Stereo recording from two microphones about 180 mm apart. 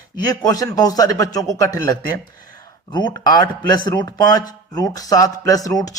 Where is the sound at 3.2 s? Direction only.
20° left (ahead or behind).